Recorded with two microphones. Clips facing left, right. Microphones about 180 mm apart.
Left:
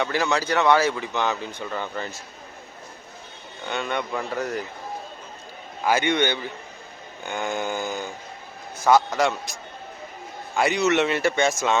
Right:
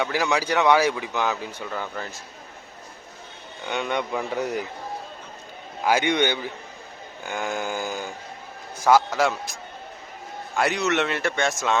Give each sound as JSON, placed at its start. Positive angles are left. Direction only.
{"t": 0.0, "sound": "speech", "side_deg": -10}
{"t": 3.7, "sound": "speech", "side_deg": -15}
{"t": 4.1, "sound": "a man's voice", "side_deg": -5}
{"t": 5.8, "sound": "speech", "side_deg": -15}
{"t": 7.3, "sound": "a man's voice", "side_deg": -5}